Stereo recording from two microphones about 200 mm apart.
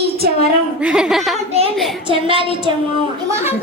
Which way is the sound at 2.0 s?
25° right (ahead or behind).